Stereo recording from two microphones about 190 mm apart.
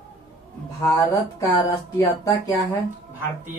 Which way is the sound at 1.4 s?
15° left (ahead or behind).